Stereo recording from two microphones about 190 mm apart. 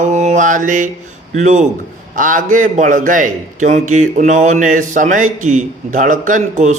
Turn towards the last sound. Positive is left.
turn(degrees=-40)  # may be behind; listen again after turning